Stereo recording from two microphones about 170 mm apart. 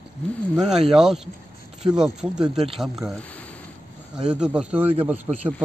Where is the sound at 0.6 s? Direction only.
5° right (ahead or behind).